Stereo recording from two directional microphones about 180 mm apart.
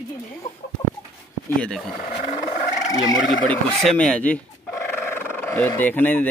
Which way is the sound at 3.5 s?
5° left (ahead or behind).